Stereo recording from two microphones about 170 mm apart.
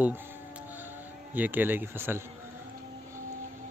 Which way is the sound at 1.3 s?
10° right (ahead or behind).